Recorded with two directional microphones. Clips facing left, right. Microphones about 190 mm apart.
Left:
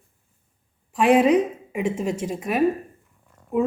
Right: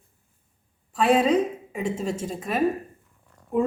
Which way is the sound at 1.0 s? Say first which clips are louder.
Left 3 dB; 15° left (ahead or behind).